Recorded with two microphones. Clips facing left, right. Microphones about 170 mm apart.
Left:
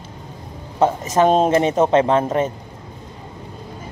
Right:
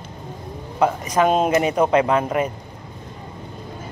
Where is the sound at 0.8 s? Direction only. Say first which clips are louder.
Left 2 dB; 25° left (ahead or behind).